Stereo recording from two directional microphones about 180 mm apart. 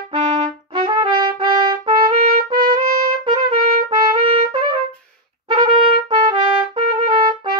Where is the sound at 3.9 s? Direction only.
20° right (ahead or behind).